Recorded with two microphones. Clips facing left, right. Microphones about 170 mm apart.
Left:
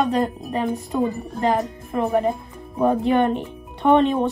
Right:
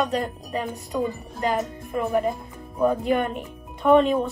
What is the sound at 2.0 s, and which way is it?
Speech, 35° left (ahead or behind).